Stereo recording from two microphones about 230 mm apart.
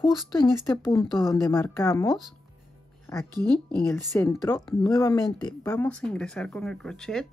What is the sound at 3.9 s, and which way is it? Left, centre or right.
Speech, centre.